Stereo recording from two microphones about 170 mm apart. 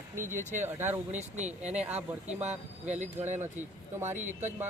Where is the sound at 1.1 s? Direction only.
40° right (ahead or behind).